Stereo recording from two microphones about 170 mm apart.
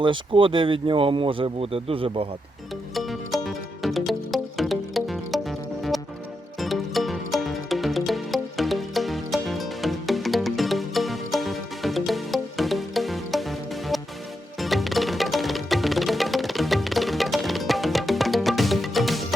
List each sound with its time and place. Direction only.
0.0 s speech: 30° right (ahead or behind)
2.9 s music: centre (ahead or behind)